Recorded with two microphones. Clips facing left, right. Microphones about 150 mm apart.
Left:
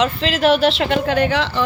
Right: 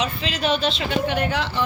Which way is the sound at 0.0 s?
90° left.